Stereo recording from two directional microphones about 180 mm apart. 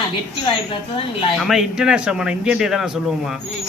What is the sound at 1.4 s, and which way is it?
A man's voice, 5° right (ahead or behind).